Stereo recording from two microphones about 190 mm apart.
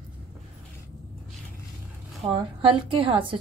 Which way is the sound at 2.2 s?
30° right (ahead or behind).